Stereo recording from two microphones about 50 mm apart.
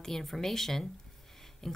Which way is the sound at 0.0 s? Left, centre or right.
Centre.